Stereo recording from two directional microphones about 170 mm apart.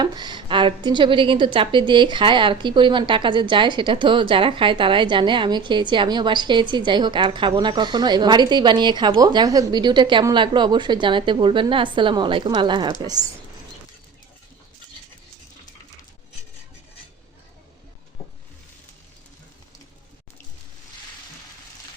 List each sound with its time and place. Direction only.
0.0 s a woman's voice: 25° right (ahead or behind)